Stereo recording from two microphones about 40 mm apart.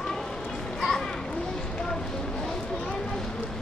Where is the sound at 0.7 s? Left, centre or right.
Centre.